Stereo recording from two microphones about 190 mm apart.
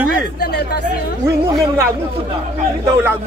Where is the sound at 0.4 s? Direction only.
60° left (ahead or behind).